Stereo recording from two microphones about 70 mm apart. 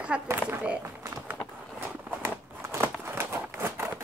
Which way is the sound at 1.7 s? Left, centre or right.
Right.